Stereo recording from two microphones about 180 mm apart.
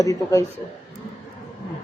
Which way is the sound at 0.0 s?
20° left (ahead or behind).